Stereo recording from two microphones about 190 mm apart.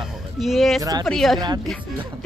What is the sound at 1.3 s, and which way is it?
Speech, 20° right (ahead or behind).